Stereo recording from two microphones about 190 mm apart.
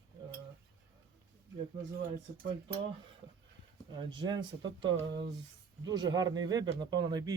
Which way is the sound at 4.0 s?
25° right (ahead or behind).